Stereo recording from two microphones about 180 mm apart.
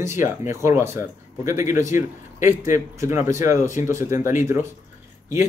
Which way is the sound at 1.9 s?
45° left (ahead or behind).